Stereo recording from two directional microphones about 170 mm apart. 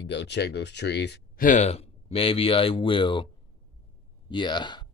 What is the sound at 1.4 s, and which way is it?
Speech, 40° left (ahead or behind).